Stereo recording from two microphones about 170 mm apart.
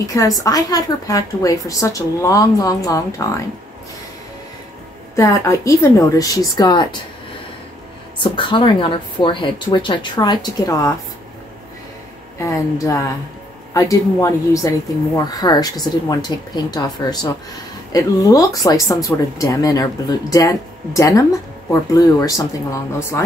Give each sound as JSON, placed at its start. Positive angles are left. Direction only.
{"t": 0.0, "sound": "speech", "side_deg": 20}
{"t": 5.1, "sound": "speech", "side_deg": 15}
{"t": 8.2, "sound": "speech", "side_deg": 30}
{"t": 12.4, "sound": "speech", "side_deg": 20}